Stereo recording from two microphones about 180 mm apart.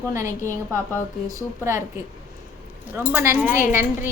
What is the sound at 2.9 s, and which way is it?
A woman's voice, 15° right (ahead or behind).